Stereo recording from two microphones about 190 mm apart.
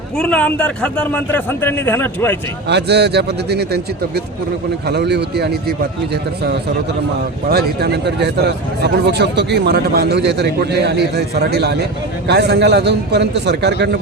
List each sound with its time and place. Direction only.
0.2 s a man's voice: 5° left (ahead or behind)
2.6 s a man's voice: 60° right (ahead or behind)
7.4 s a man's voice: 55° right (ahead or behind)